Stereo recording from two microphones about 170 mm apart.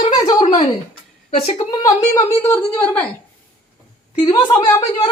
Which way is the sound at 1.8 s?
15° left (ahead or behind).